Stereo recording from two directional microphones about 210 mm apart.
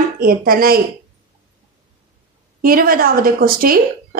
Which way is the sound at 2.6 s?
45° right (ahead or behind).